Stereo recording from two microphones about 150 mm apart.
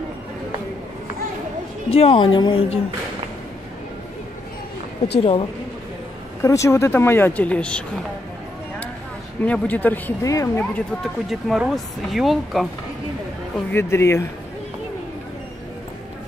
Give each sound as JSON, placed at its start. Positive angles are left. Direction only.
{"t": 1.9, "sound": "a woman's voice", "side_deg": 40}
{"t": 5.2, "sound": "a woman's voice", "side_deg": 40}
{"t": 6.4, "sound": "speech", "side_deg": 20}
{"t": 9.4, "sound": "speech", "side_deg": 10}
{"t": 10.2, "sound": "speech", "side_deg": 20}
{"t": 11.0, "sound": "speech", "side_deg": 0}
{"t": 13.7, "sound": "speech", "side_deg": 15}